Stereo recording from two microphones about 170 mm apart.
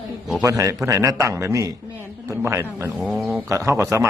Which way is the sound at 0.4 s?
20° right (ahead or behind).